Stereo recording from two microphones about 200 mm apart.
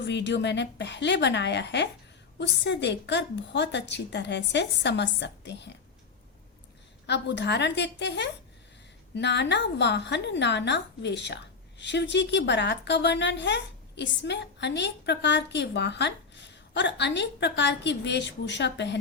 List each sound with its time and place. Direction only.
0.0 s a woman's voice: 60° left (ahead or behind)
7.1 s a woman's voice: 60° left (ahead or behind)